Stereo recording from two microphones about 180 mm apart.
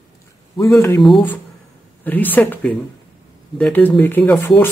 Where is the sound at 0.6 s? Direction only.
15° left (ahead or behind).